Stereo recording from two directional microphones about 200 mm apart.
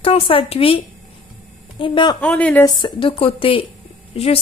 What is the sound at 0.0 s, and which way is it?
A woman's voice, 30° left (ahead or behind).